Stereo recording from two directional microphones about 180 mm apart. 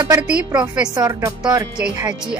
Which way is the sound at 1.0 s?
15° right (ahead or behind).